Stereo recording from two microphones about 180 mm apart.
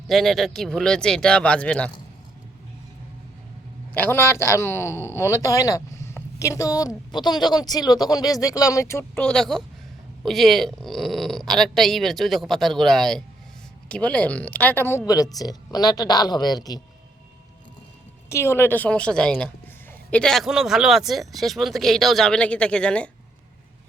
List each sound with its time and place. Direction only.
0.1 s speech: centre (ahead or behind)
3.9 s a man's voice: 10° left (ahead or behind)
18.3 s a man's voice: 15° left (ahead or behind)